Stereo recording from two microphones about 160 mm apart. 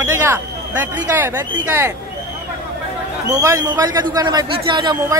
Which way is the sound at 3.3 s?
20° right (ahead or behind).